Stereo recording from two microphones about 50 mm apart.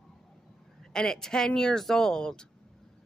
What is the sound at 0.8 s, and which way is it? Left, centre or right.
Speech, centre.